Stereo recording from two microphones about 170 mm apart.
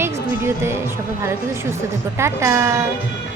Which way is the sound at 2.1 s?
15° right (ahead or behind).